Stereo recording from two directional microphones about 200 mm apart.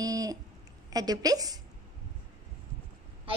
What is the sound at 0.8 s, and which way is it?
Speech, 20° right (ahead or behind).